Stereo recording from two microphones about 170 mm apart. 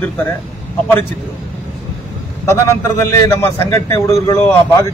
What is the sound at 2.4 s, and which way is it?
A man's voice, 15° left (ahead or behind).